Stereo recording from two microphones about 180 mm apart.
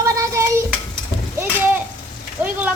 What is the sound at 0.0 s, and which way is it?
Hands, 15° right (ahead or behind).